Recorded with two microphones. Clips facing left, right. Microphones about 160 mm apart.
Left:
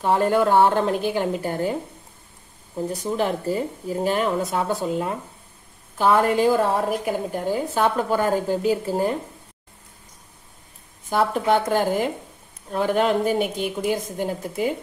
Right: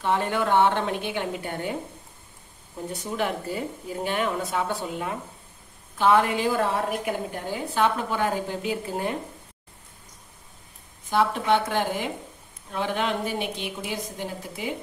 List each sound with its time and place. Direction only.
0.0 s speech: 40° left (ahead or behind)
2.9 s speech: 35° left (ahead or behind)
11.1 s a woman's voice: 45° left (ahead or behind)